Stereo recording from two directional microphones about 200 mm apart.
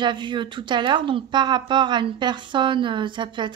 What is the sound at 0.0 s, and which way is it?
Speech, 25° right (ahead or behind).